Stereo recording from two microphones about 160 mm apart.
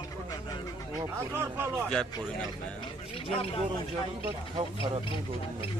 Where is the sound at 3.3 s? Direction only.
35° left (ahead or behind).